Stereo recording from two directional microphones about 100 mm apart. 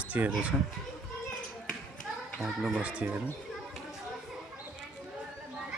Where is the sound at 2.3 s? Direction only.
10° right (ahead or behind).